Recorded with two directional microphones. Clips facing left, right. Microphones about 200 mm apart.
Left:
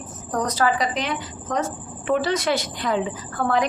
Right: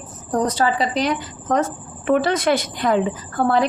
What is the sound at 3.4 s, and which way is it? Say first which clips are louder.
Speech: right 4 dB; 35° right (ahead or behind).